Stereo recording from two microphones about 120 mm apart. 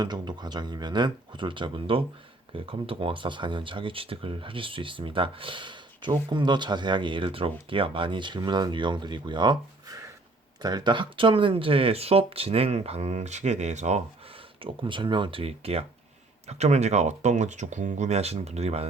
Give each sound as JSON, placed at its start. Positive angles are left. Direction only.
{"t": 0.0, "sound": "speech", "side_deg": -35}
{"t": 14.6, "sound": "speech", "side_deg": -45}
{"t": 16.5, "sound": "speech", "side_deg": -70}